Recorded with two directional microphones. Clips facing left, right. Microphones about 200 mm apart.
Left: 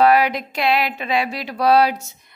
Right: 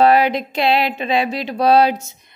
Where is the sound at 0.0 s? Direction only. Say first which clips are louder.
Right 2 dB; 25° right (ahead or behind).